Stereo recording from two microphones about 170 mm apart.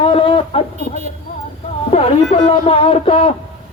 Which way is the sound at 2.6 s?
35° left (ahead or behind).